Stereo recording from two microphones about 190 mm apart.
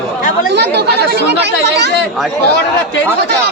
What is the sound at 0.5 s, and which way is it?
Speech, 60° right (ahead or behind).